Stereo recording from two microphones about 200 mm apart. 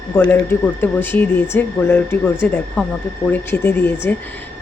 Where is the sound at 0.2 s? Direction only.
10° left (ahead or behind).